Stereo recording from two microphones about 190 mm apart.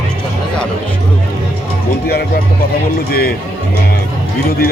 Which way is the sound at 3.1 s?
55° left (ahead or behind).